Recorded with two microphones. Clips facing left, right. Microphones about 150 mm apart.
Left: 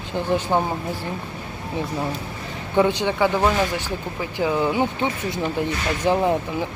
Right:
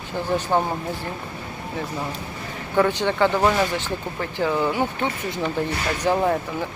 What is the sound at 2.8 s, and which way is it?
Speech, 15° left (ahead or behind).